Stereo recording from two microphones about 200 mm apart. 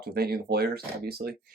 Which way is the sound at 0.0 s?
50° right (ahead or behind).